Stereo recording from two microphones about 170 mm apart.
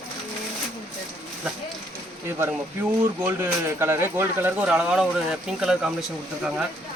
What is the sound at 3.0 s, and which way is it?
Speech, 10° right (ahead or behind).